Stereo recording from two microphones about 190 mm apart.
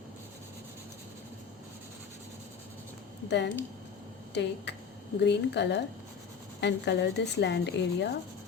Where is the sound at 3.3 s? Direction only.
65° left (ahead or behind).